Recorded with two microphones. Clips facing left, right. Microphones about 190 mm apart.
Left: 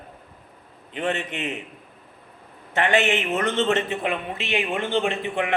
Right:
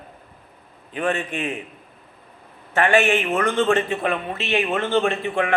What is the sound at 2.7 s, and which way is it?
A man's voice, 20° left (ahead or behind).